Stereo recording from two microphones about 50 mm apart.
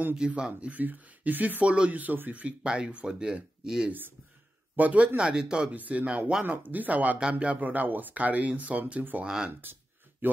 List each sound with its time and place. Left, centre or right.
0.4 s speech: right
1.6 s speech: right
2.6 s speech: centre
4.7 s speech: right
5.0 s speech: right
5.8 s speech: right
6.4 s speech: right
7.2 s speech: right
7.6 s speech: right
9.2 s speech: centre
9.5 s speech: right
10.2 s a sound: right